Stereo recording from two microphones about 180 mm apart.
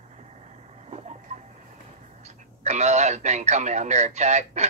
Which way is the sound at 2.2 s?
40° right (ahead or behind).